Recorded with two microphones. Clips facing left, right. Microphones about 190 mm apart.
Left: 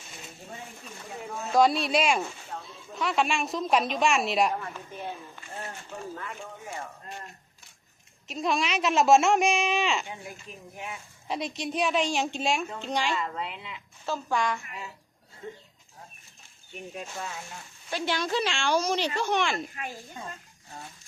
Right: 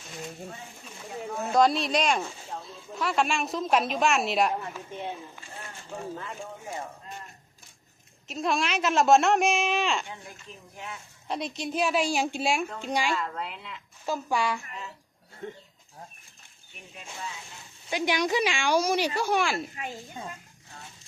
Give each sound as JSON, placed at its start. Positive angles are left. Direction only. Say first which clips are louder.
{"t": 0.9, "sound": "a woman's voice", "louder": "right 4 dB", "side_deg": 0}
{"t": 4.9, "sound": "speech", "louder": "right 2 dB", "side_deg": -20}
{"t": 6.1, "sound": "speech", "louder": "right 1 dB", "side_deg": -20}
{"t": 8.3, "sound": "a woman's voice", "louder": "even", "side_deg": 0}
{"t": 11.3, "sound": "a woman's voice", "louder": "even", "side_deg": 0}
{"t": 13.1, "sound": "a woman's voice", "louder": "even", "side_deg": 0}
{"t": 14.0, "sound": "speech", "louder": "right 1 dB", "side_deg": -10}
{"t": 15.4, "sound": "speech", "louder": "right 2 dB", "side_deg": -70}
{"t": 17.9, "sound": "speech", "louder": "right 2 dB", "side_deg": -15}
{"t": 19.7, "sound": "speech", "louder": "right 1 dB", "side_deg": -20}